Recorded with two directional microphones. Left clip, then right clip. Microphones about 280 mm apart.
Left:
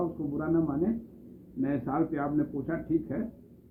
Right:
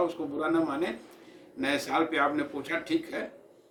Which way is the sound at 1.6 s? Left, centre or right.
Right.